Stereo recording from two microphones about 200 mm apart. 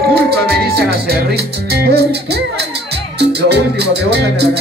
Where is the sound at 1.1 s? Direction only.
50° right (ahead or behind).